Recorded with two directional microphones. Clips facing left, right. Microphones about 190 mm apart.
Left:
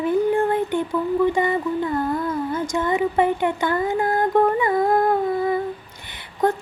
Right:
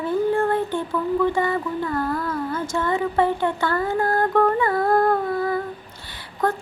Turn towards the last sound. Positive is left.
turn(degrees=20)  # may be behind; listen again after turning